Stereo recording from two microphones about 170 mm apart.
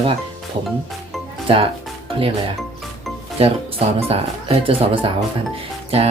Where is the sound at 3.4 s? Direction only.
35° right (ahead or behind).